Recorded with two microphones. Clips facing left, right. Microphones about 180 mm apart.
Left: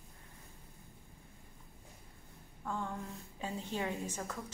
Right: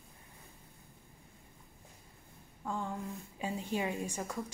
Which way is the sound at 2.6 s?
15° right (ahead or behind).